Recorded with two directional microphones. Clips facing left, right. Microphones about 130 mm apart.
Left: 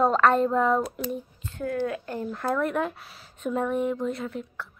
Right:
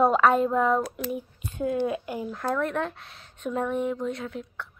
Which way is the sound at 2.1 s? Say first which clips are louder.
Left 1 dB; centre (ahead or behind).